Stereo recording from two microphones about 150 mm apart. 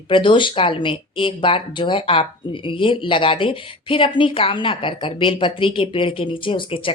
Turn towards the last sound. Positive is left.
turn(degrees=35)  # may be behind; listen again after turning